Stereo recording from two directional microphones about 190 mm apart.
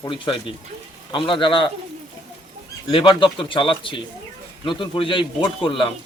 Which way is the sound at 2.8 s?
25° left (ahead or behind).